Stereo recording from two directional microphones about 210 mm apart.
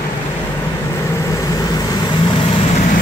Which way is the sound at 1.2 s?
15° left (ahead or behind).